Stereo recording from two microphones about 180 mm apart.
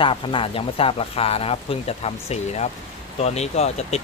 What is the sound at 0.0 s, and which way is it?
Speech, 30° left (ahead or behind).